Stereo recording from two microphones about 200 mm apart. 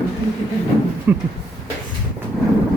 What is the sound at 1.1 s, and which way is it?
Speech, 10° right (ahead or behind).